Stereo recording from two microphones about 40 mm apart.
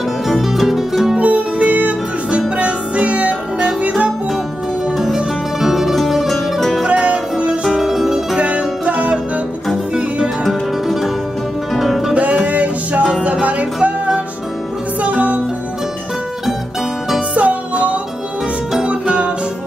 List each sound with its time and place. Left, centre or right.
0.3 s music: centre
1.1 s music: right
5.1 s music: centre
5.9 s music: centre
6.9 s music: right
7.6 s music: centre
8.4 s music: right
10.4 s music: centre
12.4 s music: right
15.0 s music: right
17.3 s music: right
18.8 s music: right